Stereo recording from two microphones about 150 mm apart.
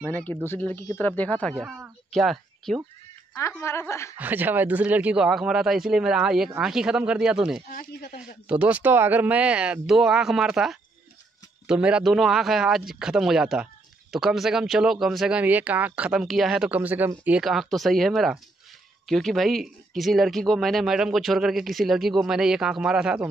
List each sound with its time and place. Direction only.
0.0 s speech: 15° left (ahead or behind)
3.6 s speech: 15° left (ahead or behind)
4.2 s speech: 10° right (ahead or behind)
7.7 s speech: 90° left
8.5 s speech: 10° right (ahead or behind)
17.4 s speech: centre (ahead or behind)